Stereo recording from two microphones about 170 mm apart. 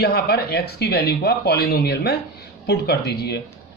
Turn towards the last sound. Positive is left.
turn(degrees=75)  # may be behind; listen again after turning